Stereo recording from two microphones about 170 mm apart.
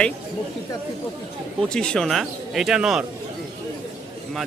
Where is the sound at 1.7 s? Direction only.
5° left (ahead or behind).